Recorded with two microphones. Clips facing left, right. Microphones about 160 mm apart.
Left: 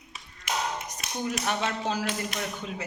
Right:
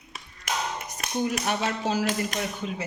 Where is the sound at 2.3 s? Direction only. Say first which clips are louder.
Right 3 dB; 40° right (ahead or behind).